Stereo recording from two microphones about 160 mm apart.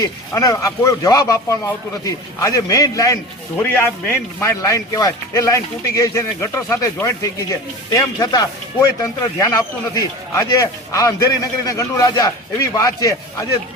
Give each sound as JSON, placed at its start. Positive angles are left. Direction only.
{"t": 0.3, "sound": "speech", "side_deg": 20}
{"t": 3.6, "sound": "speech", "side_deg": 10}